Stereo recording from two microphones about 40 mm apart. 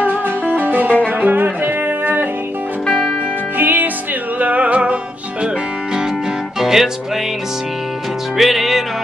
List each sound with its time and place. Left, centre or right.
0.0 s music: right
2.9 s music: left
3.5 s music: right
6.6 s music: centre
8.4 s music: centre